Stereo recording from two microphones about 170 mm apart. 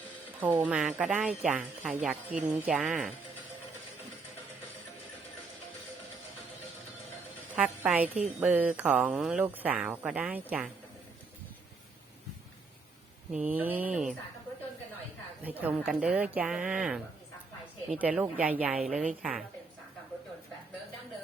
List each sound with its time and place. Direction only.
0.6 s speech: 5° right (ahead or behind)
7.5 s a woman's voice: 10° right (ahead or behind)
13.3 s speech: 10° right (ahead or behind)
15.4 s a woman's voice: 10° right (ahead or behind)